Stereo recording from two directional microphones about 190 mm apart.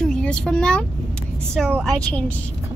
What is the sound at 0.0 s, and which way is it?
A woman's voice, 5° left (ahead or behind).